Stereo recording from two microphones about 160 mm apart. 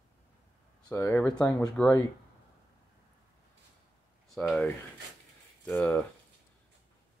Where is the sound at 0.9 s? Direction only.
15° left (ahead or behind).